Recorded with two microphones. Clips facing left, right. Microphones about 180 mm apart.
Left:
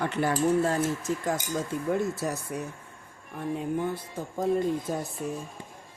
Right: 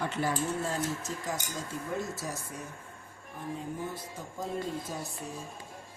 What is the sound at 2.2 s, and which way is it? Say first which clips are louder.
Speech: left 7 dB; 65° left (ahead or behind).